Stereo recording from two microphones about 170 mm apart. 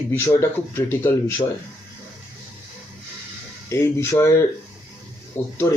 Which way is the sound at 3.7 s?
15° left (ahead or behind).